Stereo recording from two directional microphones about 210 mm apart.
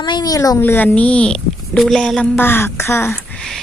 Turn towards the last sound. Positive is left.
turn(degrees=5)  # may be behind; listen again after turning